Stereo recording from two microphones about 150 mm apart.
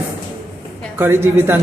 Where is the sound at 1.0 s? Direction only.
15° right (ahead or behind).